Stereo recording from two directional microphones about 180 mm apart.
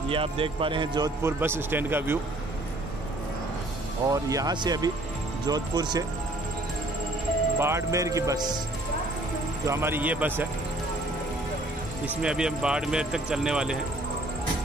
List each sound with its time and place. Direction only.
0.1 s speech: 30° right (ahead or behind); by 2.1 s 10° right (ahead or behind)
4.1 s speech: 20° right (ahead or behind)
7.5 s speech: 15° right (ahead or behind)
9.7 s speech: 15° right (ahead or behind)
12.2 s speech: 5° right (ahead or behind)